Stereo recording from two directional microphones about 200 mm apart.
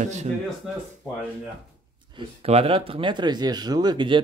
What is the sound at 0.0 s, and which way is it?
Speech, 35° right (ahead or behind).